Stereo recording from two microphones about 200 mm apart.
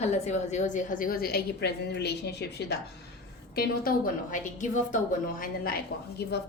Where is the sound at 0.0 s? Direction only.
35° left (ahead or behind).